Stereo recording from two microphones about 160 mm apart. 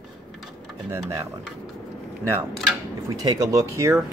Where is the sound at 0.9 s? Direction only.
20° right (ahead or behind).